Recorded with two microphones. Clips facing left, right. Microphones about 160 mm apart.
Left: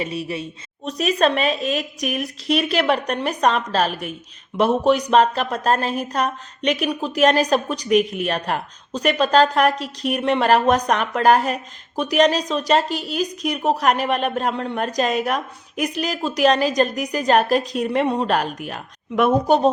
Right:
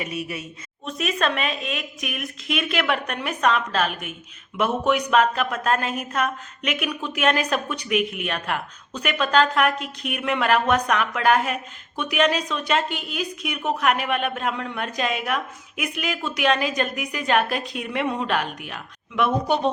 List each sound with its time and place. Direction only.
0.0 s speech: 30° left (ahead or behind)